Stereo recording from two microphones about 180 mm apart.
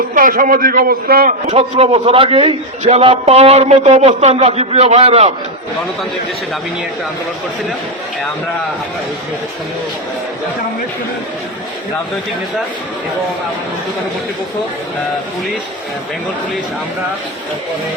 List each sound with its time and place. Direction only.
0.1 s a man's voice: 50° right (ahead or behind)
1.5 s a man's voice: 35° right (ahead or behind)